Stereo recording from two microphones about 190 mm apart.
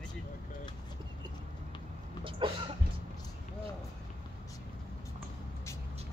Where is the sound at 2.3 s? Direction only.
25° right (ahead or behind).